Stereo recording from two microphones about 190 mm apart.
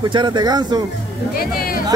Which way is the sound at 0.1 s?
25° right (ahead or behind).